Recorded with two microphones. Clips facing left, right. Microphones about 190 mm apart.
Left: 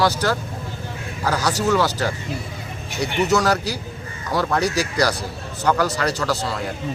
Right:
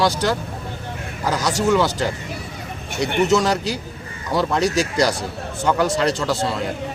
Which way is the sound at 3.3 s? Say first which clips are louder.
Right 1 dB; 20° right (ahead or behind).